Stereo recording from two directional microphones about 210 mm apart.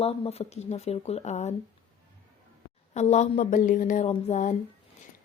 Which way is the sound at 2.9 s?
30° left (ahead or behind).